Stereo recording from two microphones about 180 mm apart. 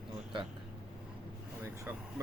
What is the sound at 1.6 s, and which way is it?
Speech, 15° right (ahead or behind).